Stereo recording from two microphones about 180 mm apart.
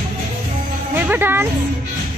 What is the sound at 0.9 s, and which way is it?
Music, 10° right (ahead or behind).